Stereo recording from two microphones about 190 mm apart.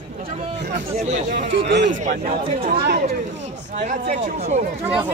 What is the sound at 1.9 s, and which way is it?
Speech, 40° right (ahead or behind).